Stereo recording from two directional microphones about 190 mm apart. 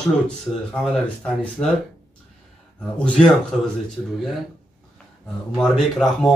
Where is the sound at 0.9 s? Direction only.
5° left (ahead or behind).